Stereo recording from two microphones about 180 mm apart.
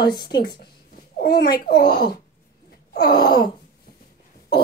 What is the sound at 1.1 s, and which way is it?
A child's voice, 60° left (ahead or behind).